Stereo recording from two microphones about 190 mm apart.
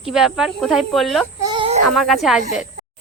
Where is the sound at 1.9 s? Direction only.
Centre (ahead or behind).